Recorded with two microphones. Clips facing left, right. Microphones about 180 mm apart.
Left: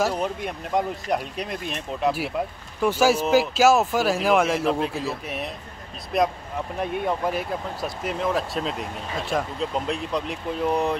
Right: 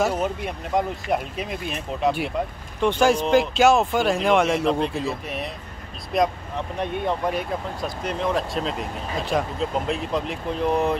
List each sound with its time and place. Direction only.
0.0 s speech: centre (ahead or behind)